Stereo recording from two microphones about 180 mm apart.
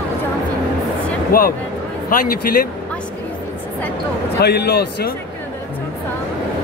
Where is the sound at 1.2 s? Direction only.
55° left (ahead or behind).